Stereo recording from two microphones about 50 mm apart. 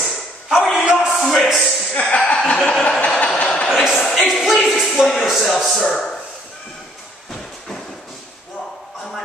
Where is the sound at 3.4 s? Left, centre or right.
Centre.